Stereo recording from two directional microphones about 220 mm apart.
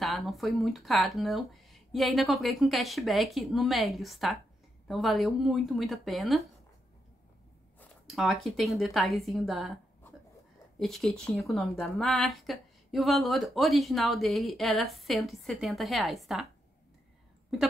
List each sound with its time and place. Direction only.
0.0 s a woman's voice: centre (ahead or behind)
8.1 s a woman's voice: centre (ahead or behind)
10.8 s a woman's voice: centre (ahead or behind)